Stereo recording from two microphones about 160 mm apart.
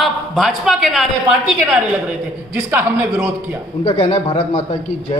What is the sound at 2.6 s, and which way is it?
Speech, 15° right (ahead or behind).